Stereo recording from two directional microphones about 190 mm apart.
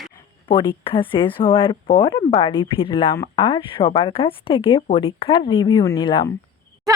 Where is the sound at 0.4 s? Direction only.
25° left (ahead or behind).